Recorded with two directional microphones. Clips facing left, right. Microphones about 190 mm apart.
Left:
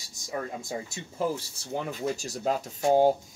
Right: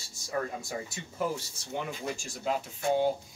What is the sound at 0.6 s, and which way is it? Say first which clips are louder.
Speech: left 2 dB; 25° left (ahead or behind).